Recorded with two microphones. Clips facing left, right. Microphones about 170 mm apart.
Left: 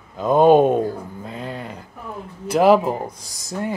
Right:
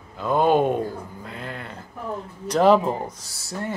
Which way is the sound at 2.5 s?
5° left (ahead or behind).